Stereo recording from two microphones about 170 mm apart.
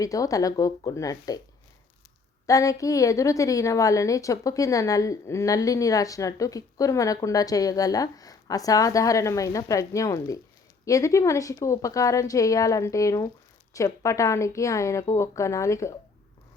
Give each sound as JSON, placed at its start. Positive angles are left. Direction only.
{"t": 0.0, "sound": "a woman's voice", "side_deg": 20}
{"t": 2.5, "sound": "a woman's voice", "side_deg": 20}